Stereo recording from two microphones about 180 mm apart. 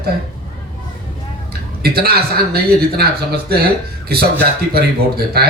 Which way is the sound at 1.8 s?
60° right (ahead or behind).